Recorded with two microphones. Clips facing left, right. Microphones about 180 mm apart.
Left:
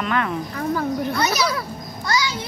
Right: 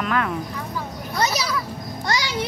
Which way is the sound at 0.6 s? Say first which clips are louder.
Left 8 dB; 60° left (ahead or behind).